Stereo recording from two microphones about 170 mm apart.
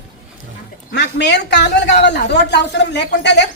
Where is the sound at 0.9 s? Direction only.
85° left.